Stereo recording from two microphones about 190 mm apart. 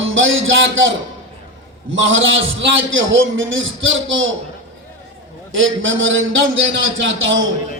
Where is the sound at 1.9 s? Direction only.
90° right.